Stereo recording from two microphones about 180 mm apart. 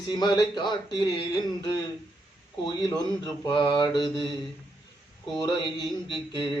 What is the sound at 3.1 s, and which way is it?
Speech, 25° left (ahead or behind).